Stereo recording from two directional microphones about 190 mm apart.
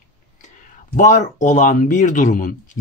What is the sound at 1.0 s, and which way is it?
Speech, 40° left (ahead or behind).